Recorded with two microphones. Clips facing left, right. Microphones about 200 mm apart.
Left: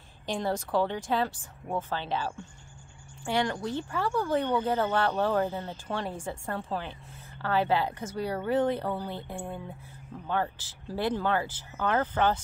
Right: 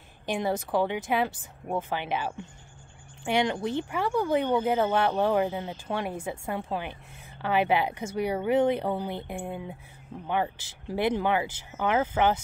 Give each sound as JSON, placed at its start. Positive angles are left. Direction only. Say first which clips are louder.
{"t": 0.3, "sound": "speech", "louder": "right 2 dB", "side_deg": -10}